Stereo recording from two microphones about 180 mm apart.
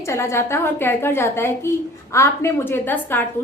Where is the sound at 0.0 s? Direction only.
15° left (ahead or behind).